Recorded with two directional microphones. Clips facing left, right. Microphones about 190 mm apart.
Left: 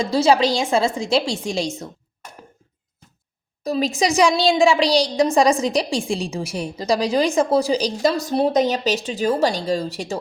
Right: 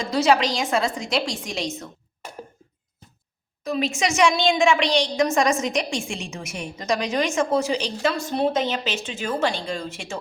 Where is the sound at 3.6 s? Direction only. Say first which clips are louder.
Left 4 dB; 35° left (ahead or behind).